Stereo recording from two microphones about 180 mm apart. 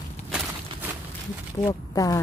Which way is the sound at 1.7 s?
20° left (ahead or behind).